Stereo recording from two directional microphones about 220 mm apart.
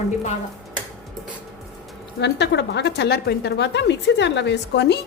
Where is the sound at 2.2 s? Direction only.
50° left (ahead or behind).